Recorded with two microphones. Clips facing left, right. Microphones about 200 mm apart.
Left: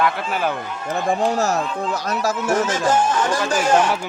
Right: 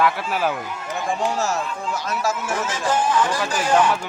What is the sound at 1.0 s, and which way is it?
Speech, 40° left (ahead or behind).